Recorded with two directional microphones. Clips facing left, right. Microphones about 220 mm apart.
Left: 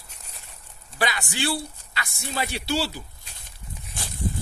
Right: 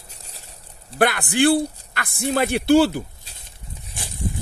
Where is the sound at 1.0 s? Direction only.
55° right (ahead or behind).